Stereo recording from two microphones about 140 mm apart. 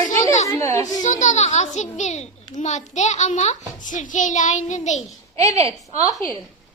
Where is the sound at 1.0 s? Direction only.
60° left (ahead or behind).